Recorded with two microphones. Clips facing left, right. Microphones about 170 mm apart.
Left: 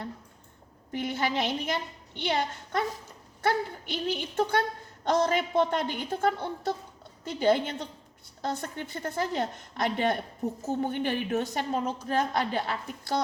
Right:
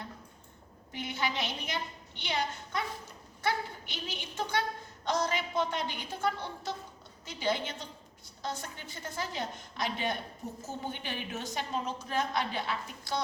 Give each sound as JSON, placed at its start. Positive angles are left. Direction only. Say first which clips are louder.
{"t": 0.9, "sound": "a woman's voice", "louder": "left 6 dB", "side_deg": 50}
{"t": 3.9, "sound": "a woman's voice", "louder": "left 10 dB", "side_deg": 55}